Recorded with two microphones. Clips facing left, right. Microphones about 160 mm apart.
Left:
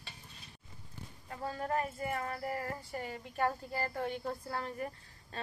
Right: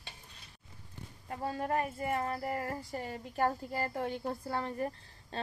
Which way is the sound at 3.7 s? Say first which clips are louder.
Right 1 dB; 20° right (ahead or behind).